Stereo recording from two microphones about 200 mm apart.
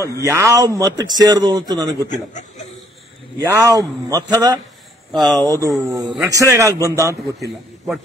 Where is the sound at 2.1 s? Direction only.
35° left (ahead or behind).